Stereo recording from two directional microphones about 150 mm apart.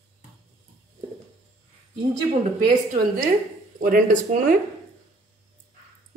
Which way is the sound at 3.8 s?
65° right (ahead or behind).